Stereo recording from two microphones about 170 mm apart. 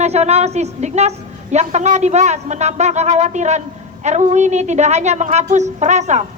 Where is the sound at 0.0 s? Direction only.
40° right (ahead or behind).